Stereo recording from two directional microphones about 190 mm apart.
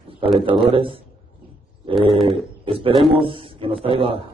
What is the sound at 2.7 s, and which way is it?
A man's voice, 30° right (ahead or behind).